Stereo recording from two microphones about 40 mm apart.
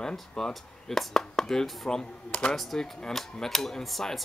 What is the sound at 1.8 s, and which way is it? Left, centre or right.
Speech, centre.